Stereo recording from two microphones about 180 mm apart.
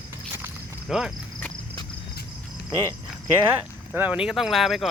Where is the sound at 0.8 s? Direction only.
Centre (ahead or behind).